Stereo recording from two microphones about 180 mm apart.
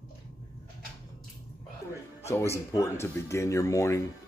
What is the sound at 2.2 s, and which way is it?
Speech, 15° left (ahead or behind).